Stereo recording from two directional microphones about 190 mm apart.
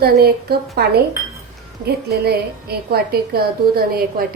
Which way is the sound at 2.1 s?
55° right (ahead or behind).